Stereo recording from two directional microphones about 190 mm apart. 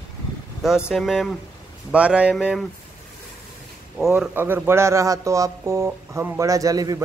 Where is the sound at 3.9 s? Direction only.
Centre (ahead or behind).